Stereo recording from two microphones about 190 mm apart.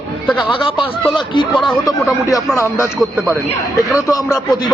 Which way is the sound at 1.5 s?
Centre (ahead or behind).